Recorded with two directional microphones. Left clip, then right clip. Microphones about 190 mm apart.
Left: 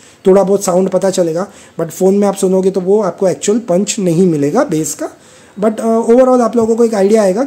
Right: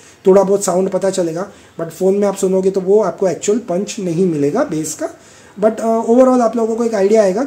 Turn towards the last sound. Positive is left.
turn(degrees=25)  # may be behind; listen again after turning